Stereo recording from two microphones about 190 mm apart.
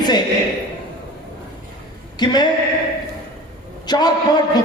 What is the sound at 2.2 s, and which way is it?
Speech, 20° left (ahead or behind).